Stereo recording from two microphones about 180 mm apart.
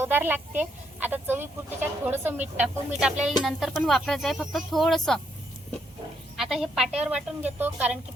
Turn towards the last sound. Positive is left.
turn(degrees=-10)  # may be behind; listen again after turning